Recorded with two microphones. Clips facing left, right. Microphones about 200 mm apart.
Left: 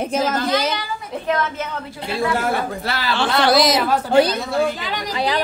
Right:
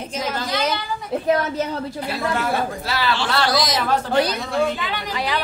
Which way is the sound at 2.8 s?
55° left (ahead or behind).